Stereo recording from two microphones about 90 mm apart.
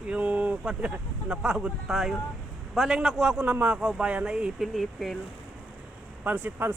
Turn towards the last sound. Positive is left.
turn(degrees=-25)  # may be behind; listen again after turning